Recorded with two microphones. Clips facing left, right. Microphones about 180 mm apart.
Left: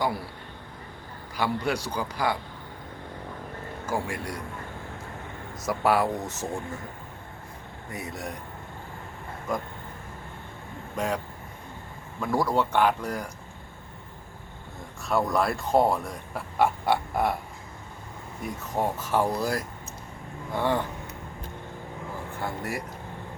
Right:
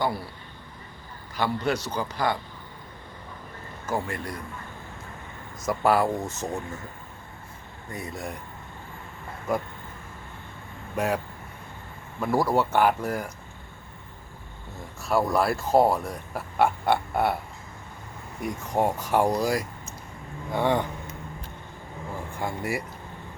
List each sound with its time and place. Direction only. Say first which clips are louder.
0.0 s a man's voice: right 1 dB; 10° left (ahead or behind)
1.4 s a man's voice: right 1 dB; 10° left (ahead or behind)
3.8 s a man's voice: right 1 dB; 10° left (ahead or behind)
5.6 s speech: right 1 dB; centre (ahead or behind)
7.9 s speech: right 1 dB; 5° left (ahead or behind)
10.9 s speech: right 3 dB; 10° right (ahead or behind)
12.2 s speech: right 2 dB; 10° right (ahead or behind)
15.0 s speech: right 2 dB; centre (ahead or behind)
18.7 s speech: right 3 dB; 15° right (ahead or behind)
22.4 s speech: right 3 dB; 10° right (ahead or behind)